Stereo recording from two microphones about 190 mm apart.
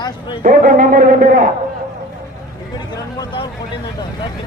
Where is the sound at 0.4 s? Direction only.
45° right (ahead or behind).